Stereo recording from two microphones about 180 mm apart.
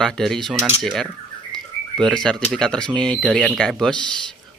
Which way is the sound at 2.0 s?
5° left (ahead or behind).